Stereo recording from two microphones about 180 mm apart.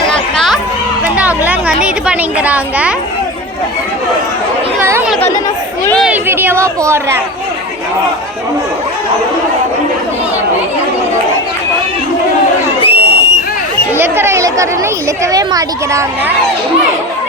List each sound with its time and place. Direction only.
0.1 s children playing: centre (ahead or behind)
1.0 s a sound: 5° right (ahead or behind)
4.8 s chatter: 15° right (ahead or behind)
6.1 s speech: 10° right (ahead or behind)
12.8 s a sound: 30° left (ahead or behind)
13.9 s speech: 15° right (ahead or behind)